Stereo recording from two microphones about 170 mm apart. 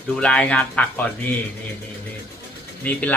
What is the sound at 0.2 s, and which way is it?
Speech, 5° left (ahead or behind).